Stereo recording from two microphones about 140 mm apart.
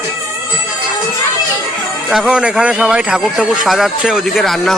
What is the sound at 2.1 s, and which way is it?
A man's voice, 5° right (ahead or behind).